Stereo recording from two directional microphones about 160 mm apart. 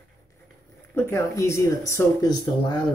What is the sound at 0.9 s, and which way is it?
Speech, 15° left (ahead or behind).